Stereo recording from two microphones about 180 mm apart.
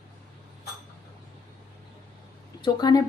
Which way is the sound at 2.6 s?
20° left (ahead or behind).